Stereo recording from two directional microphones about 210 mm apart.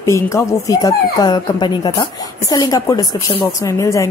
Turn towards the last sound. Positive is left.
turn(degrees=15)  # may be behind; listen again after turning